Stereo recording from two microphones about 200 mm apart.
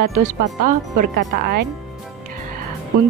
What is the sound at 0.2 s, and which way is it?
Speech, 40° right (ahead or behind).